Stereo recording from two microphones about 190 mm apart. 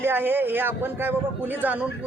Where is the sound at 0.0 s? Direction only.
10° right (ahead or behind).